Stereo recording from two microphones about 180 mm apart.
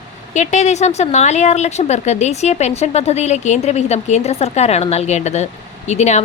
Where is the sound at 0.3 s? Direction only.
40° left (ahead or behind).